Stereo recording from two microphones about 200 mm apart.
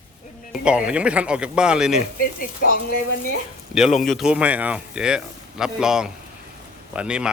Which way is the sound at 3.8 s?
Centre (ahead or behind).